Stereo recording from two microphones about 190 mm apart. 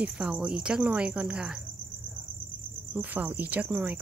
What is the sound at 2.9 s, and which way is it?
Speech, 10° right (ahead or behind).